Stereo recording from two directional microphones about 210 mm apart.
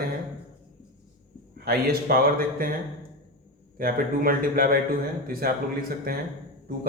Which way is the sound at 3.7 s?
45° right (ahead or behind).